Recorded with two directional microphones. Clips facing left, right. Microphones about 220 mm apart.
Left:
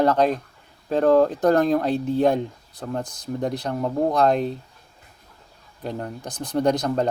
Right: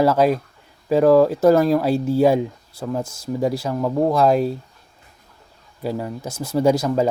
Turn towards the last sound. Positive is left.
turn(degrees=-5)  # may be behind; listen again after turning